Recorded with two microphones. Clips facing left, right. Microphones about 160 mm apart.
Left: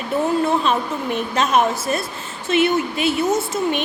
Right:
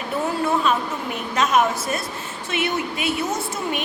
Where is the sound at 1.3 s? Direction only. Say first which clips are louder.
Even; 30° left (ahead or behind).